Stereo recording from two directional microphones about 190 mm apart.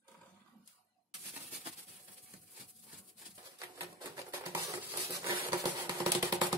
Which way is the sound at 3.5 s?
15° right (ahead or behind).